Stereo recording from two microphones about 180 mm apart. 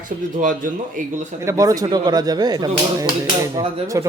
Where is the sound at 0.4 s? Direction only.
45° right (ahead or behind).